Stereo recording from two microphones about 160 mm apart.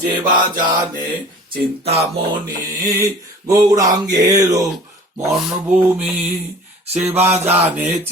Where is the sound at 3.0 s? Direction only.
20° right (ahead or behind).